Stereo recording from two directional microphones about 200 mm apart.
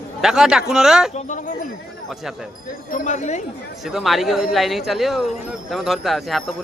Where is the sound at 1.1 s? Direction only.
40° left (ahead or behind).